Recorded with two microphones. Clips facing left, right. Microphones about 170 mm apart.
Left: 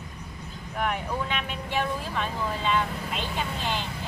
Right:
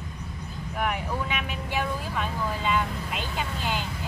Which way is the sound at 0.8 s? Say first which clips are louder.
Even; 10° right (ahead or behind).